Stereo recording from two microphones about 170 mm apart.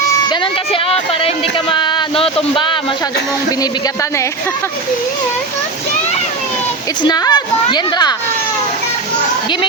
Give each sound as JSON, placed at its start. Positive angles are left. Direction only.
{"t": 0.3, "sound": "speech", "side_deg": 35}
{"t": 7.0, "sound": "speech", "side_deg": 25}